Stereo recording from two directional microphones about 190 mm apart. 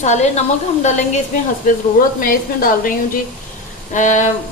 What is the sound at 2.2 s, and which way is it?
Speech, 50° left (ahead or behind).